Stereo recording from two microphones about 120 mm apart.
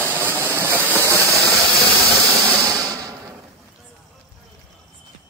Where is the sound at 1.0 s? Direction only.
25° right (ahead or behind).